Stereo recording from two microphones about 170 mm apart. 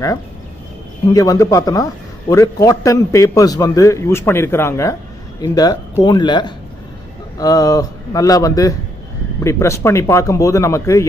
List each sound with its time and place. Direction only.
1.1 s a man's voice: 20° left (ahead or behind)